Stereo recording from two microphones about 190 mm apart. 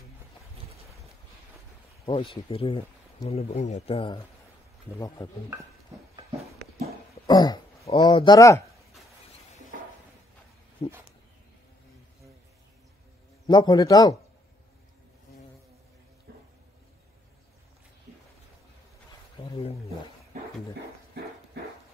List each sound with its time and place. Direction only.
2.0 s speech: 30° left (ahead or behind)
4.9 s speech: 15° left (ahead or behind)
7.2 s a sound: 20° left (ahead or behind)
8.4 s speech: 15° left (ahead or behind)
10.8 s speech: 30° left (ahead or behind)
13.5 s speech: 20° left (ahead or behind)
16.3 s a sound: 55° right (ahead or behind)
19.5 s roaring cats: 30° left (ahead or behind)